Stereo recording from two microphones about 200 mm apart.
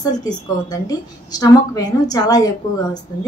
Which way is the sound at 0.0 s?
20° left (ahead or behind).